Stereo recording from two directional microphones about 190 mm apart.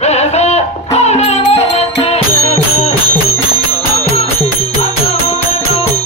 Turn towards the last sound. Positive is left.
turn(degrees=30)  # may be behind; listen again after turning